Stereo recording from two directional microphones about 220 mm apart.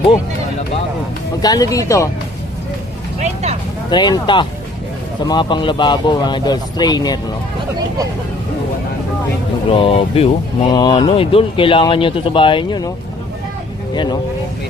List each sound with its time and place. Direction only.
1.4 s speech: 15° left (ahead or behind)
3.2 s speech: 30° right (ahead or behind)
3.8 s speech: 20° left (ahead or behind)
9.6 s speech: 25° left (ahead or behind)
13.9 s speech: 20° left (ahead or behind)